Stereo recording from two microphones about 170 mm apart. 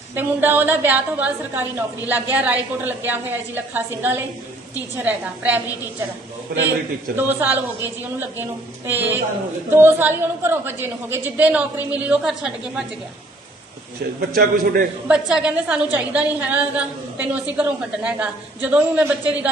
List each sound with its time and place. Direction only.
0.1 s a woman's voice: 10° right (ahead or behind)
7.2 s a woman's voice: 10° right (ahead or behind)
8.9 s a woman's voice: 10° right (ahead or behind)
14.3 s a man's voice: 60° right (ahead or behind)
15.0 s a woman's voice: 5° right (ahead or behind)